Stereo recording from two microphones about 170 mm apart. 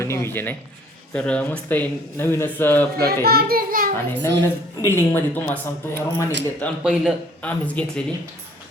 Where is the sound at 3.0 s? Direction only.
65° right (ahead or behind).